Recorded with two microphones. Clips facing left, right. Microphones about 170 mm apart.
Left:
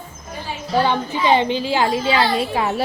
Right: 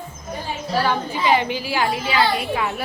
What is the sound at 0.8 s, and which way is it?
A woman's voice, 25° left (ahead or behind).